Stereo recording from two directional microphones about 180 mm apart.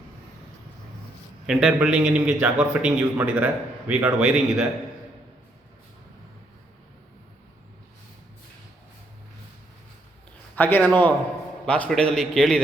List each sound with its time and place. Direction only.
1.5 s a man's voice: 5° right (ahead or behind)
10.5 s a man's voice: 10° left (ahead or behind)